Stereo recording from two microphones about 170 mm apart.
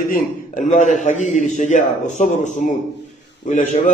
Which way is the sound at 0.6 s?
45° left (ahead or behind).